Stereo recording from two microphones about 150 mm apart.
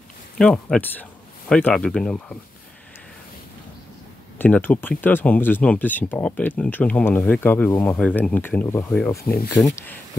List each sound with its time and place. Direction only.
0.4 s speech: 5° left (ahead or behind)
4.4 s speech: 10° left (ahead or behind)
9.3 s speech: 90° left
9.6 s speech: 20° left (ahead or behind)